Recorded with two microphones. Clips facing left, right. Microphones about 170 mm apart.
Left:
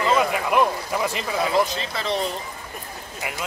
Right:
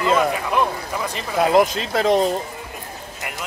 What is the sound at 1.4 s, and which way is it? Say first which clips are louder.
Speech: right 7 dB; 50° right (ahead or behind).